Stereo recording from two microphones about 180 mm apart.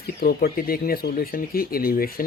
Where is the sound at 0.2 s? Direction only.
55° left (ahead or behind).